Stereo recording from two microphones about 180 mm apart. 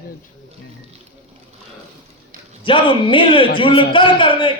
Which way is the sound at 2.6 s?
30° left (ahead or behind).